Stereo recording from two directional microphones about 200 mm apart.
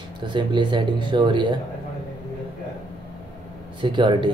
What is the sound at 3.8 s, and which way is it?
Speech, 25° right (ahead or behind).